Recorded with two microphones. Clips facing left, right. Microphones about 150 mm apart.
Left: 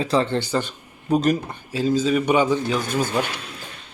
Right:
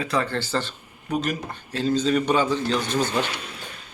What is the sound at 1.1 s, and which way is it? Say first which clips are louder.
Speech: left 7 dB; 35° left (ahead or behind).